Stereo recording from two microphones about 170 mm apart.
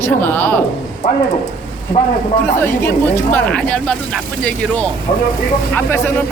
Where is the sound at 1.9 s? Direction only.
45° left (ahead or behind).